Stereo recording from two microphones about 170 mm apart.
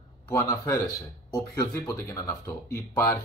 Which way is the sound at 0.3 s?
15° left (ahead or behind).